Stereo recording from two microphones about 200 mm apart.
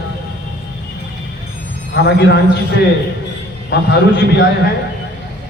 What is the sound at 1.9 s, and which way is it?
Speech, 55° left (ahead or behind).